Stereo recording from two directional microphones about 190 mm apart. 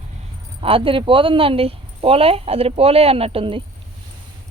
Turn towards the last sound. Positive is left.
turn(degrees=-30)  # may be behind; listen again after turning